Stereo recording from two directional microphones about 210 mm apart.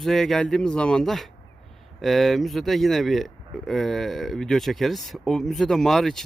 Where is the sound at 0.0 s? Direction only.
Centre (ahead or behind).